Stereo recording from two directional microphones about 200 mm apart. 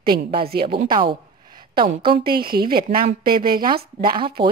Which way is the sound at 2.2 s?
50° right (ahead or behind).